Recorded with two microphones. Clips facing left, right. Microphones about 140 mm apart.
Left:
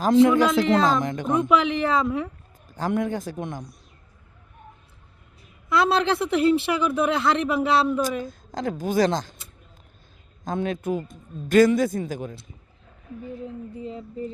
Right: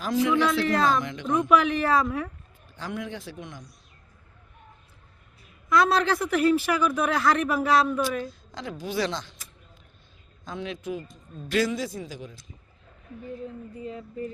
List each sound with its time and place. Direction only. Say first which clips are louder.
0.1 s a man's voice: left 7 dB; 50° left (ahead or behind)
0.6 s speech: left 3 dB; 20° left (ahead or behind)
1.0 s a man's voice: left 6 dB; 45° left (ahead or behind)
1.3 s speech: even; 25° left (ahead or behind)
2.6 s a man's voice: left 9 dB; 45° left (ahead or behind)
5.6 s speech: left 1 dB; 25° left (ahead or behind)
8.2 s a woman's voice: left 6 dB; 45° left (ahead or behind)
10.4 s a man's voice: left 7 dB; 50° left (ahead or behind)